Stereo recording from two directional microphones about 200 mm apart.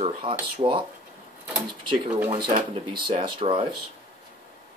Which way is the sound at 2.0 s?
15° right (ahead or behind).